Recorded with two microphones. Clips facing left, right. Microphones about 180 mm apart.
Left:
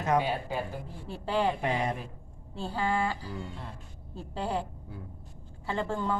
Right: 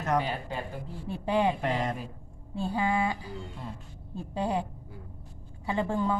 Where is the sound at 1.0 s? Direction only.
20° right (ahead or behind).